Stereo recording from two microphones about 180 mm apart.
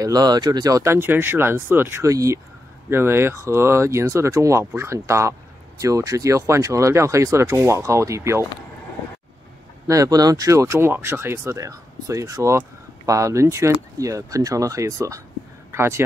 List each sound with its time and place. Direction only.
0.0 s speech: 20° right (ahead or behind)
9.8 s speech: 20° right (ahead or behind)